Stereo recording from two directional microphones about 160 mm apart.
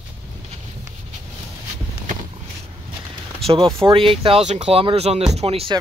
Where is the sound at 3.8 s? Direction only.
35° right (ahead or behind).